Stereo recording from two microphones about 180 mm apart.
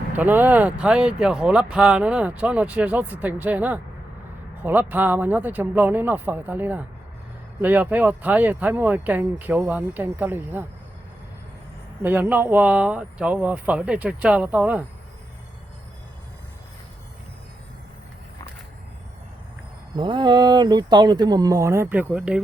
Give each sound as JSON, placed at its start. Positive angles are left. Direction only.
{"t": 0.2, "sound": "speech", "side_deg": -10}
{"t": 12.0, "sound": "speech", "side_deg": -10}
{"t": 20.0, "sound": "speech", "side_deg": -25}